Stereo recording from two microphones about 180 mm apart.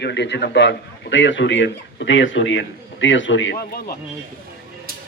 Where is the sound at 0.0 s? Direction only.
70° left (ahead or behind); by 3.7 s 90° left.